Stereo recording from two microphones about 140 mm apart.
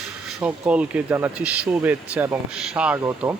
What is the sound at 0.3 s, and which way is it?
Speech, 10° right (ahead or behind).